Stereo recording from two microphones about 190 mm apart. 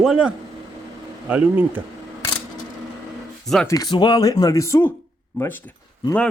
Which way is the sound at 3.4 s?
Centre (ahead or behind).